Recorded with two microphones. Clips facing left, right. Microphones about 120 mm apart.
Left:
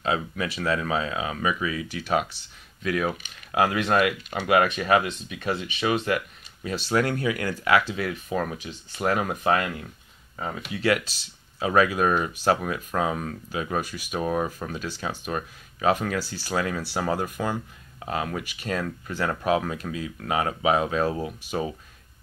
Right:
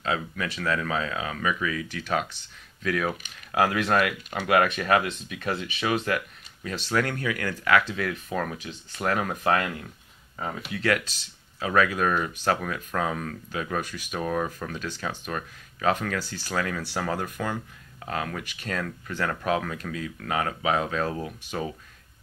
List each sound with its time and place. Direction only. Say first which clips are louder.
0.0 s speech: left 2 dB; 20° left (ahead or behind)
6.9 s speech: left 3 dB; 20° left (ahead or behind)